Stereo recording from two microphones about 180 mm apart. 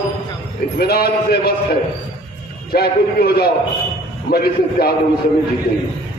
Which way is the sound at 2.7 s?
60° left (ahead or behind).